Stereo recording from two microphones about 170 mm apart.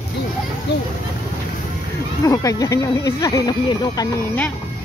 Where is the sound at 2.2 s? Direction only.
20° left (ahead or behind).